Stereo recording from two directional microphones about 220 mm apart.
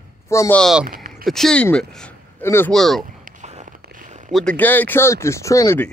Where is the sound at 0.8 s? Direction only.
40° right (ahead or behind).